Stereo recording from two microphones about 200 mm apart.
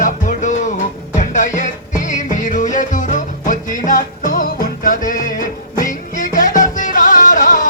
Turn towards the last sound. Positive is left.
turn(degrees=40)  # may be behind; listen again after turning